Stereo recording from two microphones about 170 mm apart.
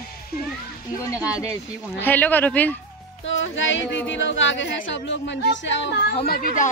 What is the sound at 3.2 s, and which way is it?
Speech, 90° left.